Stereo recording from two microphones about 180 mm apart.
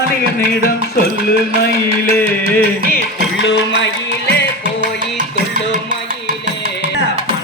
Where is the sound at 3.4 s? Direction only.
90° left.